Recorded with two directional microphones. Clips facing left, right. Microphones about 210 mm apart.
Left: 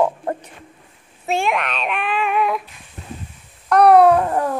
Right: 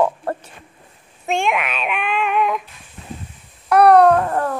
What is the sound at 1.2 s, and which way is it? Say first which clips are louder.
Child singing: even; centre (ahead or behind).